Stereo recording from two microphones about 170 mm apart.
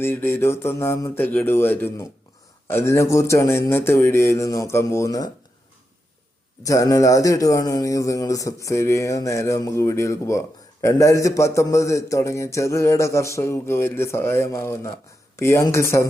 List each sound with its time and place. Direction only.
0.0 s speech: 10° left (ahead or behind)
6.6 s speech: 20° left (ahead or behind)